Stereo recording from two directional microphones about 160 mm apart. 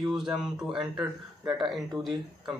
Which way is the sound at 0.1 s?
5° right (ahead or behind).